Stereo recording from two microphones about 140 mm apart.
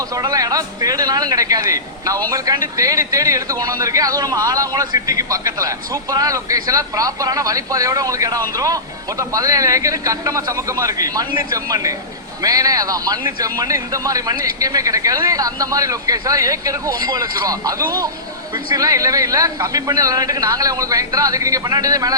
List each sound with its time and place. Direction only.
0.1 s a man's voice: 25° right (ahead or behind)